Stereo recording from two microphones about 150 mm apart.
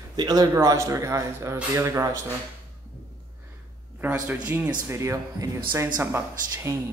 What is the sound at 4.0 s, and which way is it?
A man's voice, 10° right (ahead or behind).